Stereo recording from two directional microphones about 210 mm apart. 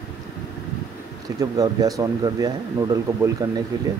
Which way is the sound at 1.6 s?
15° right (ahead or behind).